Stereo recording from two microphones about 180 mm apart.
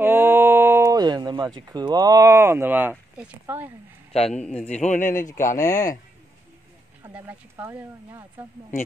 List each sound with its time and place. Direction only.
0.0 s speech: 15° right (ahead or behind)
4.3 s a man's voice: 5° left (ahead or behind)
4.6 s speech: 40° left (ahead or behind)
7.0 s speech: 10° right (ahead or behind)